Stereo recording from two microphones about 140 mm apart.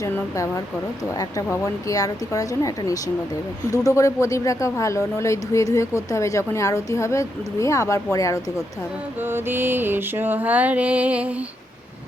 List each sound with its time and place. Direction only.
0.0 s speech: 20° left (ahead or behind)
9.2 s mantra: 15° right (ahead or behind)